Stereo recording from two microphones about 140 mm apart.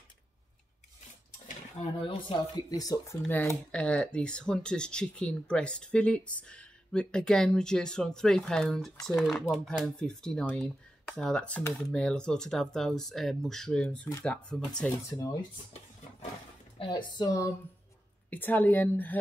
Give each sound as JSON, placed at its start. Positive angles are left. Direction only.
{"t": 2.0, "sound": "speech", "side_deg": 40}
{"t": 3.3, "sound": "speech", "side_deg": 15}
{"t": 15.0, "sound": "speech", "side_deg": 25}
{"t": 16.9, "sound": "speech", "side_deg": 25}
{"t": 18.3, "sound": "speech", "side_deg": 15}